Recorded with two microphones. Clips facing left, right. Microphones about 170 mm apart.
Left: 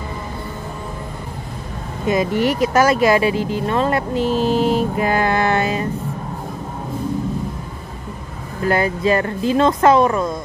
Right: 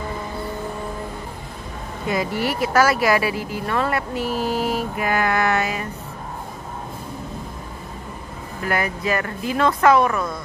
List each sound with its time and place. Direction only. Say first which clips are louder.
2.0 s speech: left 6 dB; 20° left (ahead or behind)
8.6 s speech: left 6 dB; 30° left (ahead or behind)